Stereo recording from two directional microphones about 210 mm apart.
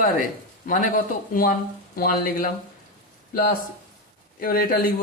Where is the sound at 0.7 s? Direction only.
40° left (ahead or behind).